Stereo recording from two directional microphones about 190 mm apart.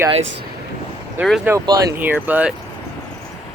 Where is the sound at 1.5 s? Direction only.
20° right (ahead or behind).